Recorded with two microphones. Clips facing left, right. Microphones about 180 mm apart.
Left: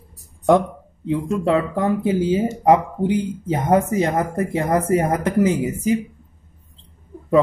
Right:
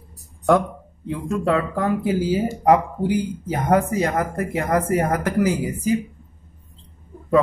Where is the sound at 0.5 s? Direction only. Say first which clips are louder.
Left 2 dB; 20° left (ahead or behind).